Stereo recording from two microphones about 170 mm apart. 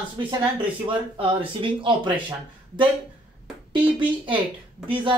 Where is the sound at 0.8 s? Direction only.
30° right (ahead or behind).